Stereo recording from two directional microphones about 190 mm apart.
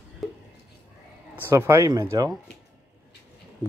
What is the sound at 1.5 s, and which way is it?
Speech, 15° right (ahead or behind).